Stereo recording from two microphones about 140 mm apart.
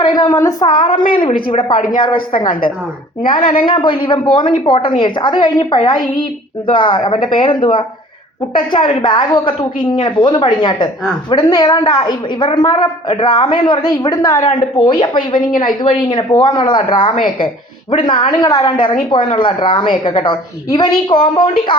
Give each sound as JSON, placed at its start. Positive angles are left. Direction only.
{"t": 0.0, "sound": "a woman's voice", "side_deg": 30}
{"t": 1.7, "sound": "speech", "side_deg": 80}
{"t": 2.0, "sound": "a woman's voice", "side_deg": 35}
{"t": 3.6, "sound": "a woman's voice", "side_deg": 35}
{"t": 14.8, "sound": "a woman's voice", "side_deg": 35}